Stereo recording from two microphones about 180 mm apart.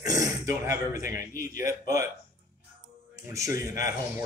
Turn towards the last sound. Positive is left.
turn(degrees=-20)  # may be behind; listen again after turning